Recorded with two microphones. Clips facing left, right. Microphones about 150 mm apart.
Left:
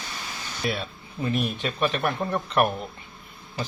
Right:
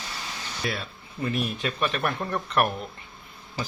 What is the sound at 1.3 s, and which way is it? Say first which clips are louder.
Speech: left 3 dB; centre (ahead or behind).